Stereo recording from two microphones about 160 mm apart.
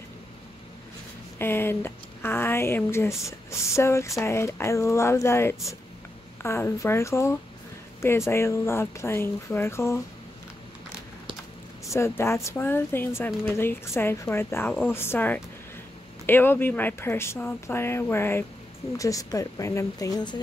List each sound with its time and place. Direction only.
1.4 s speech: 15° left (ahead or behind)
11.9 s speech: 15° left (ahead or behind)